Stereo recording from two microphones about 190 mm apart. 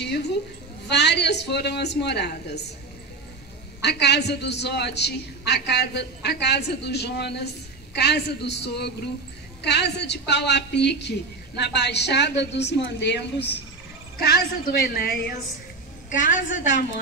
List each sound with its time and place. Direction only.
0.0 s a woman's voice: 60° left (ahead or behind)
3.8 s a woman's voice: 60° left (ahead or behind)